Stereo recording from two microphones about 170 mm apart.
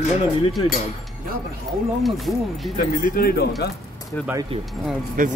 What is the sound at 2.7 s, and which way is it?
Speech, 55° left (ahead or behind).